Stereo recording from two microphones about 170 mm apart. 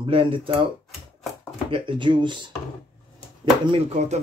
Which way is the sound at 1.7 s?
30° right (ahead or behind).